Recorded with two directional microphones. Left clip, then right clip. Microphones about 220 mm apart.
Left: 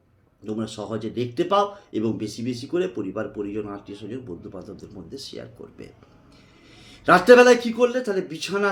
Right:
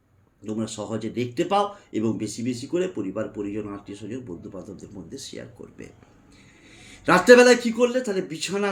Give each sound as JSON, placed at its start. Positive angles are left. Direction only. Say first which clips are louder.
{"t": 0.4, "sound": "speech", "louder": "even", "side_deg": -5}